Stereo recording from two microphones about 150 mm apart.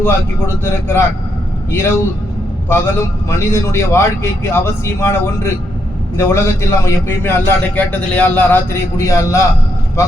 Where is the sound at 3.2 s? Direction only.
20° left (ahead or behind).